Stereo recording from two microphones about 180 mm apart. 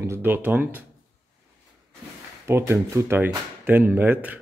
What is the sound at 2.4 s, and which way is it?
Speech, 15° right (ahead or behind).